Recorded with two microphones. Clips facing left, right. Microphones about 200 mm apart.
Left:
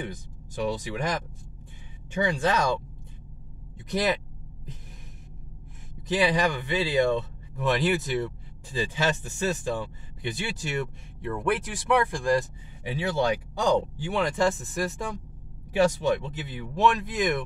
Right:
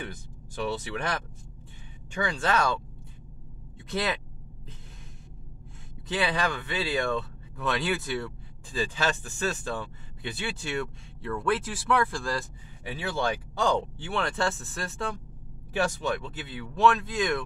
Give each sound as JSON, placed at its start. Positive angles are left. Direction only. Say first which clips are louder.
{"t": 0.0, "sound": "speech", "louder": "left 3 dB", "side_deg": 15}
{"t": 3.9, "sound": "speech", "louder": "left 4 dB", "side_deg": 15}
{"t": 6.0, "sound": "speech", "louder": "left 4 dB", "side_deg": 20}